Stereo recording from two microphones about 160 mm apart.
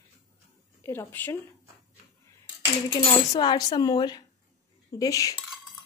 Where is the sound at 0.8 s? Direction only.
15° left (ahead or behind).